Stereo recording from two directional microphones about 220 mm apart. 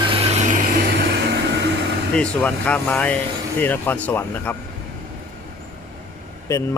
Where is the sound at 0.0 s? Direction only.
25° right (ahead or behind).